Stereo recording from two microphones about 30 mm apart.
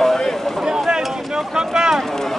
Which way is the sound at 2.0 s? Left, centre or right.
Centre.